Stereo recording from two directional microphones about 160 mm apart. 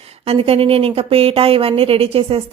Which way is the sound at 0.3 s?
35° right (ahead or behind).